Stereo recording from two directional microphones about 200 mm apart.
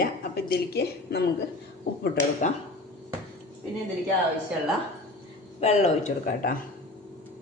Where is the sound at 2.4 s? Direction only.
35° left (ahead or behind).